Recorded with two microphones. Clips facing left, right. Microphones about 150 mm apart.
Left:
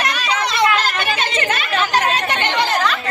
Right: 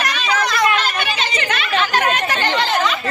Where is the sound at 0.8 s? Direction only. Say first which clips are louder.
Left 1 dB; 50° left (ahead or behind).